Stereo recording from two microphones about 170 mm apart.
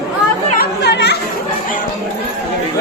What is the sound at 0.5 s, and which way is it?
Chatter, 70° left (ahead or behind).